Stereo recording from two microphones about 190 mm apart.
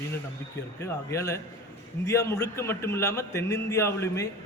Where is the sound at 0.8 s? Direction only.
15° left (ahead or behind).